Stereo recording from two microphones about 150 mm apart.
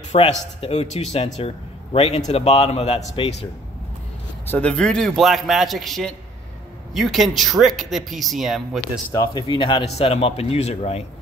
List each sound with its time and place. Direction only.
0.1 s a man's voice: 45° left (ahead or behind)
4.5 s speech: 10° left (ahead or behind)
9.1 s speech: 30° left (ahead or behind)